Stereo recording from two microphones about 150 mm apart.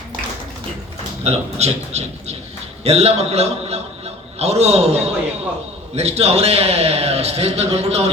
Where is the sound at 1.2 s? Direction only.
45° right (ahead or behind).